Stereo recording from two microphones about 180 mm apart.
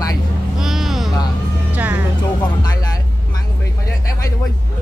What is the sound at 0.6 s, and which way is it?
Vehicle, centre (ahead or behind).